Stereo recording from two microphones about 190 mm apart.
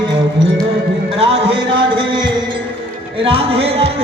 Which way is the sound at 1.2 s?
30° right (ahead or behind).